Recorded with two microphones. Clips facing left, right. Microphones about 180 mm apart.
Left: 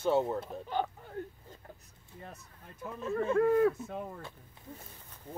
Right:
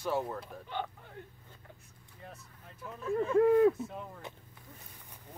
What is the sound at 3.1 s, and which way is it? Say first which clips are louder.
Speech: right 1 dB; 10° right (ahead or behind).